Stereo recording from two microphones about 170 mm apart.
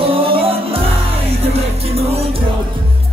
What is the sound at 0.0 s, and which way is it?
Music, 35° right (ahead or behind).